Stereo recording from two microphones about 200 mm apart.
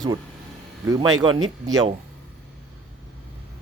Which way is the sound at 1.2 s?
25° right (ahead or behind).